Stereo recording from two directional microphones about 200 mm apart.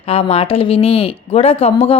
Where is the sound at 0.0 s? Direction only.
30° left (ahead or behind).